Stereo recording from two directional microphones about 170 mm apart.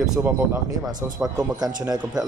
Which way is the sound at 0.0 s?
5° right (ahead or behind).